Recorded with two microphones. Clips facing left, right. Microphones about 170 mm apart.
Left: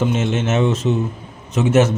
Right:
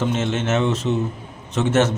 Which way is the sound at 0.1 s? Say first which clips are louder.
Left 2 dB; 15° left (ahead or behind).